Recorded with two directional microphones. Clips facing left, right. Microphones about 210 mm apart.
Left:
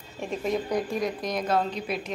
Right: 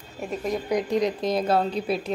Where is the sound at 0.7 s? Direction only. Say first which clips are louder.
Right 4 dB; 20° right (ahead or behind).